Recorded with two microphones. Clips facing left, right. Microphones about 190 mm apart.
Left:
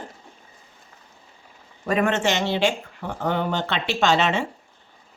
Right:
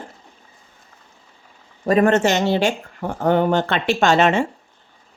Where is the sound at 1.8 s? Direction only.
40° right (ahead or behind).